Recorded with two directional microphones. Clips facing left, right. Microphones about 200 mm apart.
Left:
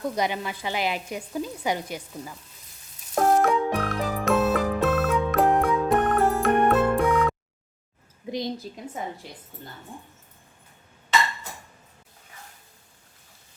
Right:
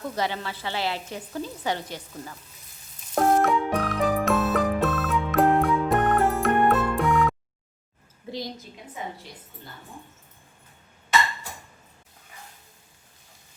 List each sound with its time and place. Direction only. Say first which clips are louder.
0.2 s speech: left 2 dB; 15° left (ahead or behind)
3.2 s frog: even; centre (ahead or behind)
8.3 s a woman's voice: left 4 dB; 20° left (ahead or behind)